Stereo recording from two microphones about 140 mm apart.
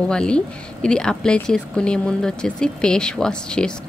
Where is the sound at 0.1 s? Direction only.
5° left (ahead or behind).